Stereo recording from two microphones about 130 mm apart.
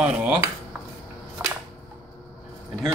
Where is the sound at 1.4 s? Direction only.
20° right (ahead or behind).